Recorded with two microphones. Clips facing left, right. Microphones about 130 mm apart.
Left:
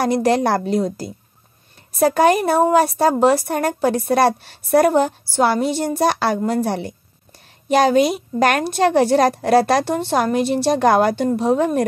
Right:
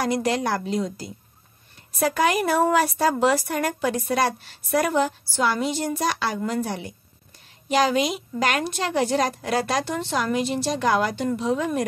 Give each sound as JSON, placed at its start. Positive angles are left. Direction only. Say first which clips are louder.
{"t": 0.1, "sound": "a woman's voice", "louder": "left 7 dB", "side_deg": 35}
{"t": 5.8, "sound": "a woman's voice", "louder": "left 6 dB", "side_deg": 30}
{"t": 6.0, "sound": "a woman's voice", "louder": "left 9 dB", "side_deg": 60}
{"t": 7.6, "sound": "a woman's voice", "louder": "left 6 dB", "side_deg": 50}
{"t": 9.9, "sound": "a woman's voice", "louder": "left 6 dB", "side_deg": 55}